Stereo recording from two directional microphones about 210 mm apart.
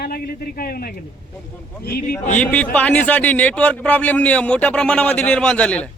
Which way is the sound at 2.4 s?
5° left (ahead or behind).